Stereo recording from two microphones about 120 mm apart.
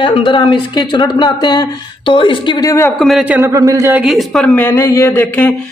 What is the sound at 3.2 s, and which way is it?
Speech, 10° right (ahead or behind).